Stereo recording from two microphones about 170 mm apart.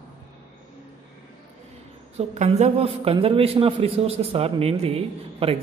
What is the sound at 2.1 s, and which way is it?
A man's voice, 40° right (ahead or behind).